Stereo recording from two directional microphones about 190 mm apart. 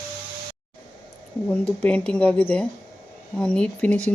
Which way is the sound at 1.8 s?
5° left (ahead or behind).